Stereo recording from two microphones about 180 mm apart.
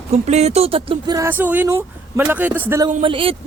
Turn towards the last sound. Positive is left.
turn(degrees=-30)  # may be behind; listen again after turning